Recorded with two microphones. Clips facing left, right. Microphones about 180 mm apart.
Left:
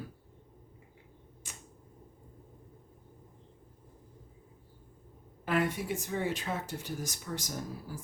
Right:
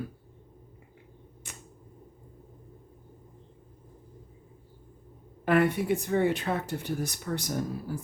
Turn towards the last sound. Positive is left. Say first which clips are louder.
# right 8 dB
turn(degrees=-60)  # may be behind; listen again after turning